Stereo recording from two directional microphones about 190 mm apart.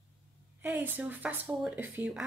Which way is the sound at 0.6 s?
10° right (ahead or behind).